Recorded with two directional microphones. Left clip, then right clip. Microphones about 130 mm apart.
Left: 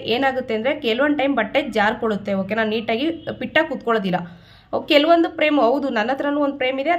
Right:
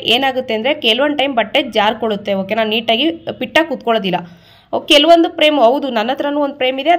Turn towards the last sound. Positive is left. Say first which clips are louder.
# right 6 dB
turn(degrees=-25)  # may be behind; listen again after turning